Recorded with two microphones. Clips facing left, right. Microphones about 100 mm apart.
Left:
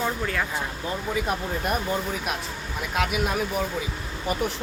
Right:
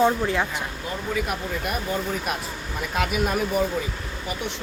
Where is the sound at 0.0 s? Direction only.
25° right (ahead or behind).